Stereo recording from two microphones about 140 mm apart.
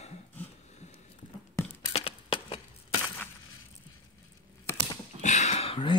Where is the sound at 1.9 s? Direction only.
40° left (ahead or behind).